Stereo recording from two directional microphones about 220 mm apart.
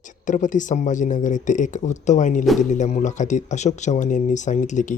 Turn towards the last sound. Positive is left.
turn(degrees=35)  # may be behind; listen again after turning